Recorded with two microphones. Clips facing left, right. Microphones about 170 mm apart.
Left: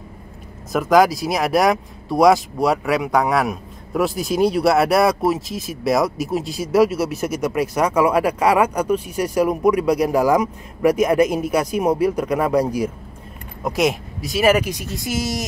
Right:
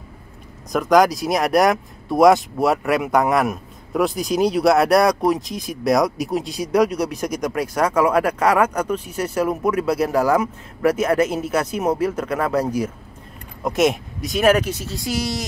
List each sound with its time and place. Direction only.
0.7 s speech: 5° left (ahead or behind)
13.7 s speech: centre (ahead or behind); by 15.4 s 20° left (ahead or behind)